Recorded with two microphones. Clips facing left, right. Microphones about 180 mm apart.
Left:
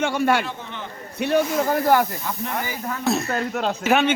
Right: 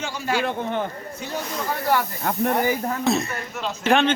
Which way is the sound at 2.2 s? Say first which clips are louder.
Right 7 dB; 50° right (ahead or behind).